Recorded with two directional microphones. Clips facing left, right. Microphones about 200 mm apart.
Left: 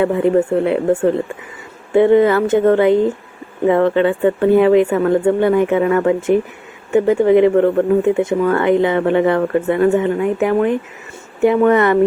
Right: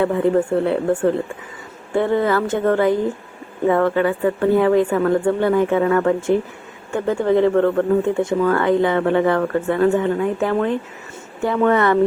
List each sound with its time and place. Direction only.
0.0 s speech: 20° left (ahead or behind)
1.9 s speech: 20° left (ahead or behind)